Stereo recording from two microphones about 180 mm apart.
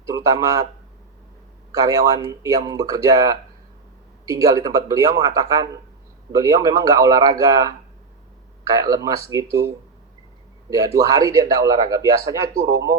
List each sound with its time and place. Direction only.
0.0 s speech: 20° right (ahead or behind)
1.7 s a man's voice: 15° right (ahead or behind)